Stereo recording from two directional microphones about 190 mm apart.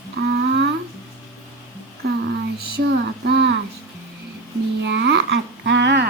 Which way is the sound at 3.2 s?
65° right (ahead or behind).